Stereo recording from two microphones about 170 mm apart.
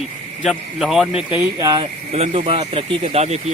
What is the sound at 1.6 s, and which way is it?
Speech, 25° right (ahead or behind).